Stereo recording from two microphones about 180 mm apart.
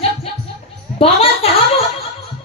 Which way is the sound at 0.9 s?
30° left (ahead or behind).